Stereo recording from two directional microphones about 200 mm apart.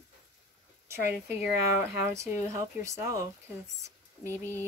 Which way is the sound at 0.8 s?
10° right (ahead or behind).